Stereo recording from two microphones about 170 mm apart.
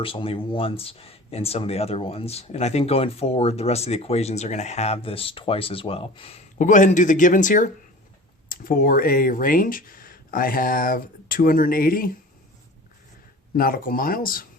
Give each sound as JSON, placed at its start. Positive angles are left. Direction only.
{"t": 0.0, "sound": "speech", "side_deg": 30}
{"t": 13.6, "sound": "speech", "side_deg": 60}